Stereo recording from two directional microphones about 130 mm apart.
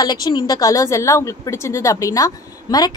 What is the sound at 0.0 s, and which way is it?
A woman's voice, 35° left (ahead or behind).